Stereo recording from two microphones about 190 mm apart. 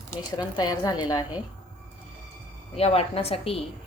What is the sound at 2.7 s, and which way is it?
Speech, 30° left (ahead or behind).